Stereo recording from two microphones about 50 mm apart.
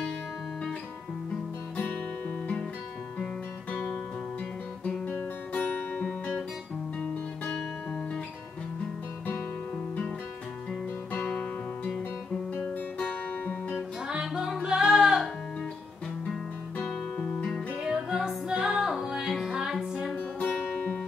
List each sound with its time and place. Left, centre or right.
5.5 s music: left
7.0 s music: centre
10.7 s guitar: centre
13.0 s guitar: left
14.0 s music: centre
17.8 s music: centre
18.7 s music: centre
20.3 s guitar: left